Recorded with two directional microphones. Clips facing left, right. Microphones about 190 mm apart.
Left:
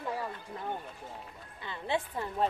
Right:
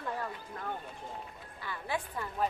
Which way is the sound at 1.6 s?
25° left (ahead or behind).